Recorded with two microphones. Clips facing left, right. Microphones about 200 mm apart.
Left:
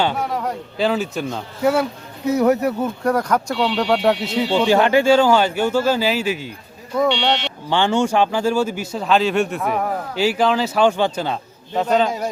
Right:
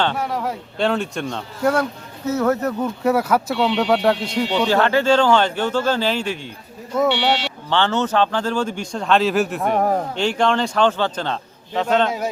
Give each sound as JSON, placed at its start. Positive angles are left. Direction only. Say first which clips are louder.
{"t": 0.0, "sound": "speech", "louder": "left 1 dB", "side_deg": 5}
{"t": 3.0, "sound": "speech", "louder": "right 2 dB", "side_deg": -5}
{"t": 7.1, "sound": "speech", "louder": "even", "side_deg": 20}
{"t": 9.7, "sound": "speech", "louder": "right 7 dB", "side_deg": -40}
{"t": 10.2, "sound": "speech", "louder": "left 5 dB", "side_deg": 5}